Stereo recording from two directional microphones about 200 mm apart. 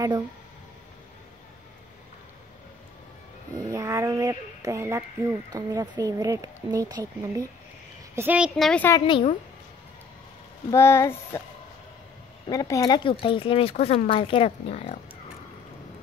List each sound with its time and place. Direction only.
3.5 s speech: 15° right (ahead or behind); by 9.0 s 10° left (ahead or behind)
9.0 s speech: 25° left (ahead or behind)
10.7 s speech: 15° left (ahead or behind)
12.4 s speech: 15° left (ahead or behind)